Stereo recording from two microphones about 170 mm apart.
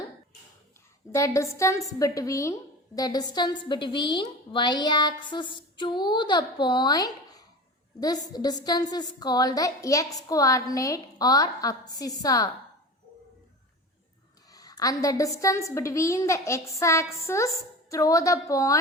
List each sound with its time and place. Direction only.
1.1 s a woman's voice: 15° left (ahead or behind)
14.5 s a woman's voice: 20° left (ahead or behind)